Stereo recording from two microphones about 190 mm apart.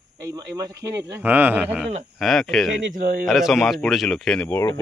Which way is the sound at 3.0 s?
45° right (ahead or behind).